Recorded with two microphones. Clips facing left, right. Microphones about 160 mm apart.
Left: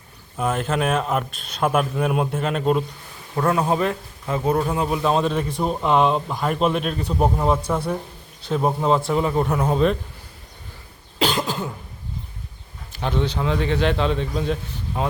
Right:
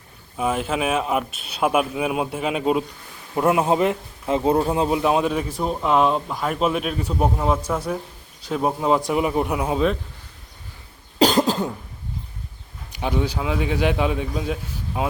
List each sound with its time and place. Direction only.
0.3 s a man's voice: 5° right (ahead or behind)
3.3 s a man's voice: 20° right (ahead or behind); by 10.0 s centre (ahead or behind)
11.2 s cough: 40° right (ahead or behind)
12.9 s a man's voice: 10° right (ahead or behind)